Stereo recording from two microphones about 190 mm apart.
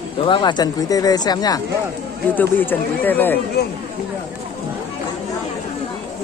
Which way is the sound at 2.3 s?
10° left (ahead or behind).